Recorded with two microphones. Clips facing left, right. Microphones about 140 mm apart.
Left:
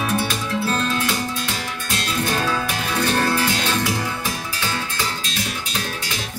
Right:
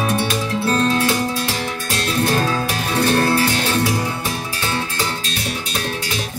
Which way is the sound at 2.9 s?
35° right (ahead or behind).